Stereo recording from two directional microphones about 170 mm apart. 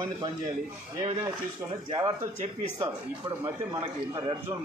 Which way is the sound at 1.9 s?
30° right (ahead or behind).